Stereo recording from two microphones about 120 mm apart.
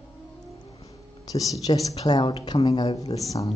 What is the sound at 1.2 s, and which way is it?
Speech, 30° left (ahead or behind).